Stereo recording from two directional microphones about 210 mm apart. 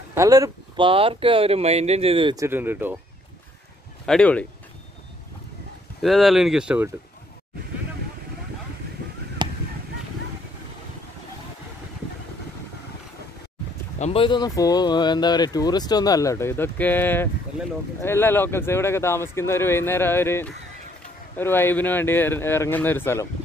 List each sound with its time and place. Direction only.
0.1 s speech: 15° right (ahead or behind)
4.0 s speech: 5° left (ahead or behind)
6.0 s speech: centre (ahead or behind)
9.4 s a sound: 20° right (ahead or behind)
13.9 s speech: 30° left (ahead or behind); by 23.2 s 10° left (ahead or behind)